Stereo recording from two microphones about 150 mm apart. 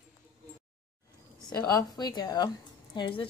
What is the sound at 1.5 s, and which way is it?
Speech, 25° left (ahead or behind).